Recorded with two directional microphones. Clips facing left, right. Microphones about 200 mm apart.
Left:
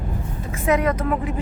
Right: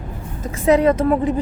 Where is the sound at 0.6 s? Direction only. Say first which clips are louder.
Right 6 dB; 30° right (ahead or behind).